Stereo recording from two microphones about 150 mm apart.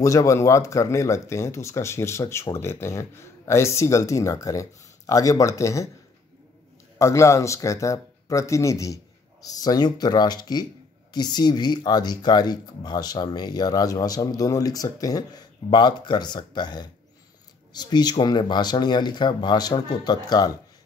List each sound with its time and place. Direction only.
0.0 s speech: 20° left (ahead or behind)
7.0 s speech: 20° left (ahead or behind)